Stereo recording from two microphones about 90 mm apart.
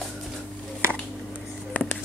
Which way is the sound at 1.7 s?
15° left (ahead or behind).